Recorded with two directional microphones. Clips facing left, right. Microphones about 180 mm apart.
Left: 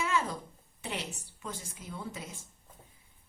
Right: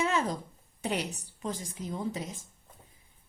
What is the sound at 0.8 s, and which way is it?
A woman's voice, 40° right (ahead or behind).